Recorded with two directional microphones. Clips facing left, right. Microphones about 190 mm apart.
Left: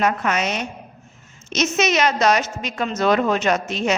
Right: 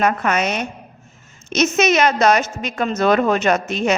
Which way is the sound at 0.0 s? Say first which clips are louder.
Right 2 dB; 55° right (ahead or behind).